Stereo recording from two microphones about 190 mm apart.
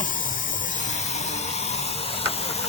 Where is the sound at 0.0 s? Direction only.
45° left (ahead or behind).